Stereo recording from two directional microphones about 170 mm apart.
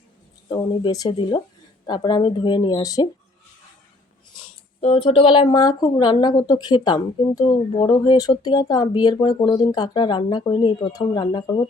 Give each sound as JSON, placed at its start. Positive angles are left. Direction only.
{"t": 0.5, "sound": "speech", "side_deg": 25}
{"t": 4.4, "sound": "speech", "side_deg": 30}